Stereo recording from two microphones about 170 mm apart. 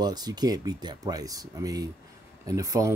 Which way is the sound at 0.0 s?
25° right (ahead or behind).